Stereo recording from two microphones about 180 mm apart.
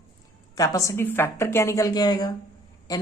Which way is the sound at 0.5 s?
20° left (ahead or behind).